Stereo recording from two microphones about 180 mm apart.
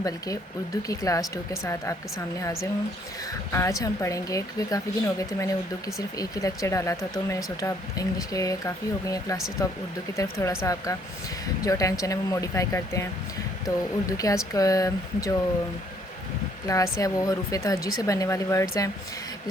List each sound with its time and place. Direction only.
0.0 s speech: 20° left (ahead or behind)
16.6 s speech: 20° left (ahead or behind)